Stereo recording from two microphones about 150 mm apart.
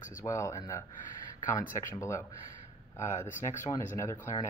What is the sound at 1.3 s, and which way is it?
Speech, 60° left (ahead or behind).